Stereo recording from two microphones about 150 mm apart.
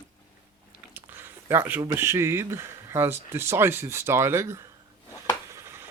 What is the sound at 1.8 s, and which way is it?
Speech, 20° right (ahead or behind).